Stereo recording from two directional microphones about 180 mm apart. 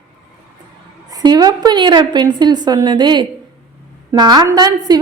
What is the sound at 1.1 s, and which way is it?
A woman's voice, 20° right (ahead or behind).